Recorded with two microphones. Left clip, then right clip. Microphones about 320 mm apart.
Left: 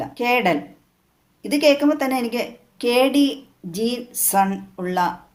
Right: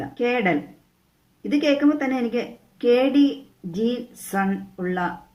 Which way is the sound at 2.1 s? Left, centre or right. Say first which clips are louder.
Left 2 dB; left.